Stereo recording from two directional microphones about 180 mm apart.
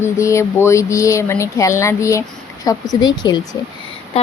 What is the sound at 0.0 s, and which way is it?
A woman's voice, 15° left (ahead or behind).